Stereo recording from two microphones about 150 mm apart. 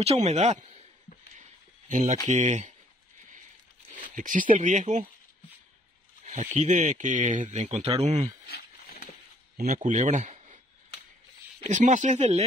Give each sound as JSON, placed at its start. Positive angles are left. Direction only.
{"t": 0.0, "sound": "speech", "side_deg": -45}
{"t": 1.9, "sound": "speech", "side_deg": -55}
{"t": 3.9, "sound": "speech", "side_deg": -60}
{"t": 6.2, "sound": "speech", "side_deg": -50}
{"t": 8.5, "sound": "a sound", "side_deg": 90}
{"t": 9.6, "sound": "speech", "side_deg": -55}
{"t": 11.6, "sound": "speech", "side_deg": -55}